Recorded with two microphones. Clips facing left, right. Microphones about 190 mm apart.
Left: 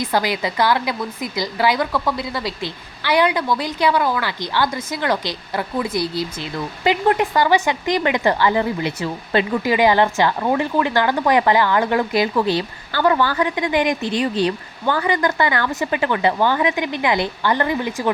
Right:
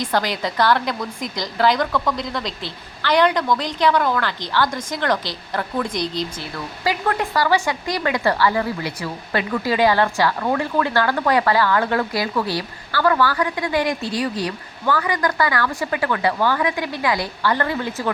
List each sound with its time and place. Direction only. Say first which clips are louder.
0.0 s speech: left 1 dB; 10° left (ahead or behind)
6.8 s a woman's voice: left 5 dB; 20° left (ahead or behind)